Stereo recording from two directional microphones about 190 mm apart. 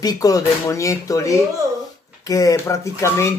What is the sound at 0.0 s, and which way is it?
Speech, 20° left (ahead or behind).